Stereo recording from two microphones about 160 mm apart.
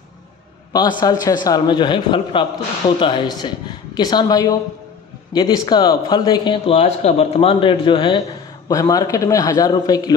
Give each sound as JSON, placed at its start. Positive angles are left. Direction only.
{"t": 0.7, "sound": "a man's voice", "side_deg": 25}
{"t": 8.6, "sound": "a man's voice", "side_deg": 20}